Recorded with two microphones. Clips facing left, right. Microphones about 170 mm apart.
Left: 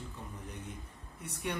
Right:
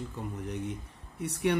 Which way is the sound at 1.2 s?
70° right (ahead or behind).